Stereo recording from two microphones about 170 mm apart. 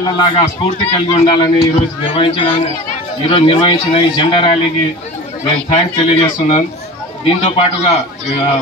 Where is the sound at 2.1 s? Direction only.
30° left (ahead or behind).